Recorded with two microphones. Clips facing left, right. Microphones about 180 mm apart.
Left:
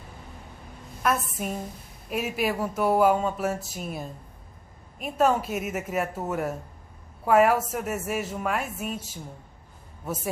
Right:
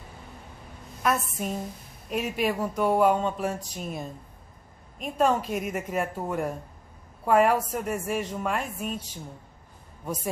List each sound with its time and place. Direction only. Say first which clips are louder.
1.0 s speech: even; 5° left (ahead or behind)